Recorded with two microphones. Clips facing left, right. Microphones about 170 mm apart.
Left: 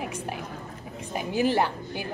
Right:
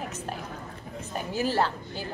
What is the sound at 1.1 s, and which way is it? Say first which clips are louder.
Speech: left 3 dB; 15° left (ahead or behind).